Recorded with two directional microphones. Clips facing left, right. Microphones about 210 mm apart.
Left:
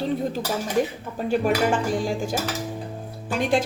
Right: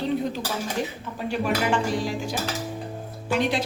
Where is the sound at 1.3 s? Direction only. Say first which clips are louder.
Left 3 dB; 50° left (ahead or behind).